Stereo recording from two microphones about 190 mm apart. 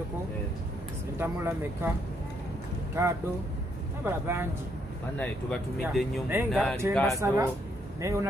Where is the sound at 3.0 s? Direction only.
15° right (ahead or behind).